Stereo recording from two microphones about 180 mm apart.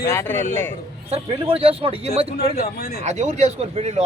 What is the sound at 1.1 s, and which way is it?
Speech, 30° right (ahead or behind).